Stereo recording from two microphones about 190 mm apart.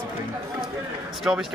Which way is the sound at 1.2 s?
Centre (ahead or behind).